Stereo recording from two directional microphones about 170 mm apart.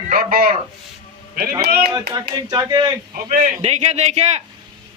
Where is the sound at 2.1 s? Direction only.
20° right (ahead or behind).